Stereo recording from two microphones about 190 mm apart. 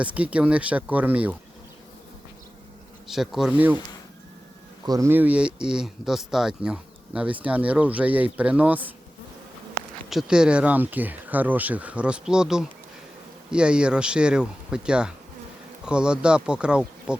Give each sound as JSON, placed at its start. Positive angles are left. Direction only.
{"t": 0.0, "sound": "speech", "side_deg": -5}
{"t": 3.1, "sound": "speech", "side_deg": 0}
{"t": 4.9, "sound": "speech", "side_deg": -15}
{"t": 10.1, "sound": "speech", "side_deg": -5}